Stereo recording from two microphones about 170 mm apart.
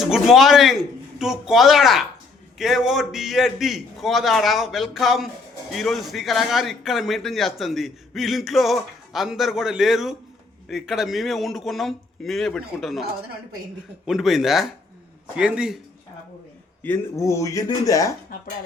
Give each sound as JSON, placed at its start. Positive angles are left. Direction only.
{"t": 0.0, "sound": "speech", "side_deg": 0}
{"t": 16.8, "sound": "speech", "side_deg": 15}